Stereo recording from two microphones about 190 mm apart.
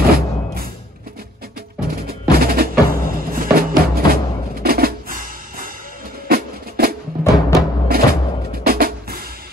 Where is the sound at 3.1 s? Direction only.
50° right (ahead or behind).